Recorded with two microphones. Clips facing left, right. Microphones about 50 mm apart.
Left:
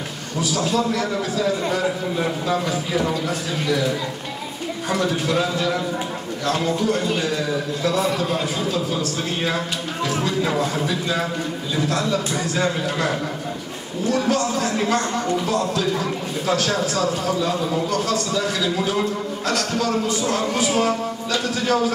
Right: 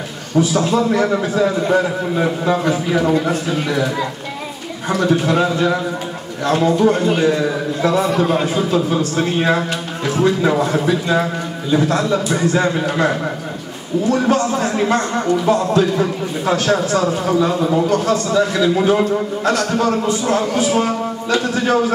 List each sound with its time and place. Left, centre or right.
0.4 s speech: right
4.9 s speech: right